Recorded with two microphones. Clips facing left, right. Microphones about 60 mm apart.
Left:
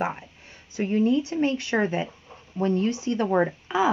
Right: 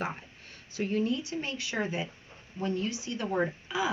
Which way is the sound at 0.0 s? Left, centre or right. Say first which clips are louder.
Left 7 dB; centre.